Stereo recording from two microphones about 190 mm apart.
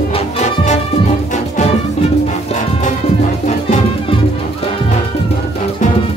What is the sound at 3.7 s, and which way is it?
Music, 30° left (ahead or behind).